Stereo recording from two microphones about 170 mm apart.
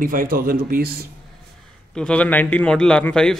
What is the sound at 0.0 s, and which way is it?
Speech, 55° right (ahead or behind).